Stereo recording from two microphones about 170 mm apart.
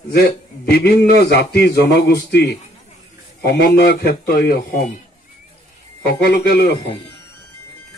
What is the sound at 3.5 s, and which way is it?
A man's voice, 65° left (ahead or behind).